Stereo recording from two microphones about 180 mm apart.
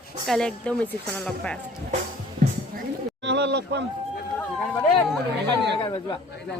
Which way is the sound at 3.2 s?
70° right (ahead or behind).